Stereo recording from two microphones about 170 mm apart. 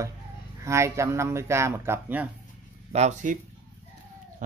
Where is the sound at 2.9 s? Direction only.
40° right (ahead or behind).